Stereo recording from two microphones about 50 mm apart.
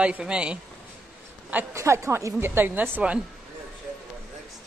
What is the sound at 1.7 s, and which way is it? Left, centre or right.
Speech, right.